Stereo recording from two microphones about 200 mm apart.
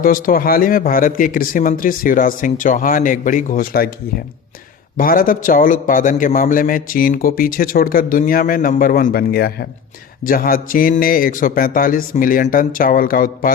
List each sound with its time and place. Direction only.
0.0 s a man's voice: 45° left (ahead or behind)
4.9 s a man's voice: 45° left (ahead or behind)